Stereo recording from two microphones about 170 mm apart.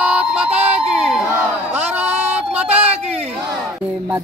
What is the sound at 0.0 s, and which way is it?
Crowd, 5° right (ahead or behind).